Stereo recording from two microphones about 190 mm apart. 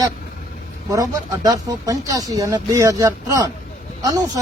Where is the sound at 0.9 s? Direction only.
20° right (ahead or behind).